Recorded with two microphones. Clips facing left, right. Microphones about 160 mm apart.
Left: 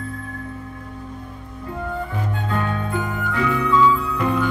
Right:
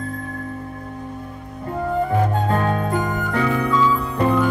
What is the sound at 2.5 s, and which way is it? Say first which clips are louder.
Music: right 4 dB; 40° right (ahead or behind).